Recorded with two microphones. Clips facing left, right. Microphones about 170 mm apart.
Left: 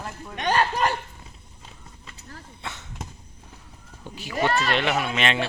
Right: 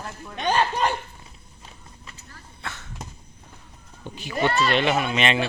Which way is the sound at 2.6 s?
20° left (ahead or behind).